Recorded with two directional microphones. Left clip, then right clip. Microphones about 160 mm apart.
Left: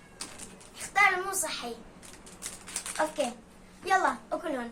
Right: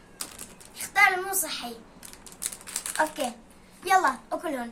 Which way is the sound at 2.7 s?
50° right (ahead or behind).